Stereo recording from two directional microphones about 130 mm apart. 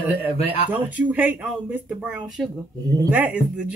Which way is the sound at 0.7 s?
15° right (ahead or behind).